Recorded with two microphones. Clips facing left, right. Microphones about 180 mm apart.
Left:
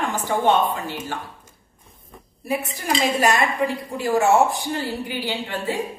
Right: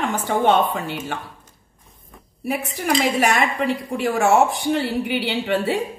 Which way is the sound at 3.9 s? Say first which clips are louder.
Even; 70° right (ahead or behind).